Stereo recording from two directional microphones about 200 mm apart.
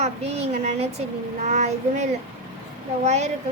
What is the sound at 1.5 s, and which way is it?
Speech, 35° right (ahead or behind).